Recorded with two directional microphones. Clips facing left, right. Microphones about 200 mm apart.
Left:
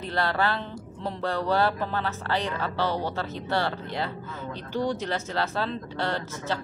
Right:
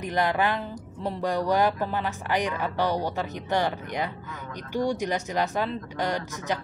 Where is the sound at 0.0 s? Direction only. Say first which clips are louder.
Right 2 dB; 15° right (ahead or behind).